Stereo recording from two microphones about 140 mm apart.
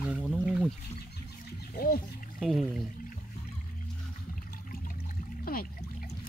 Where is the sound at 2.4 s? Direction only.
Centre (ahead or behind).